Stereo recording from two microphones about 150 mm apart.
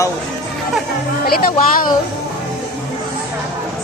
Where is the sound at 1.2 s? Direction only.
80° left.